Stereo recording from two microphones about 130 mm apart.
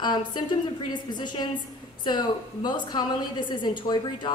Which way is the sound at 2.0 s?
35° left (ahead or behind).